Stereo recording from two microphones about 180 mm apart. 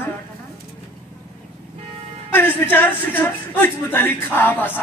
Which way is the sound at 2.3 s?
10° left (ahead or behind).